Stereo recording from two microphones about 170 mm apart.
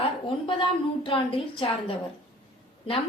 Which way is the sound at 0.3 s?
30° left (ahead or behind).